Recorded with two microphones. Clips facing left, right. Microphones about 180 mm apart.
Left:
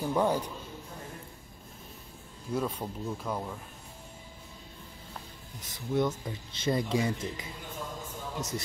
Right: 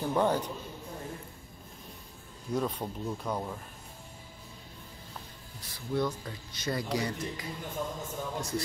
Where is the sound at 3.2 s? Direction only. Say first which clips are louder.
Right 1 dB; 5° right (ahead or behind).